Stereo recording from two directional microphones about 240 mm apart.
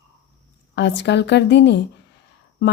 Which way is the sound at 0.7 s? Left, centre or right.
Left.